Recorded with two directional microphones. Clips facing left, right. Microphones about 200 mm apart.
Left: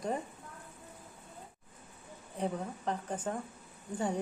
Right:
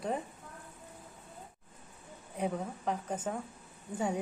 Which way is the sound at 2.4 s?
10° right (ahead or behind).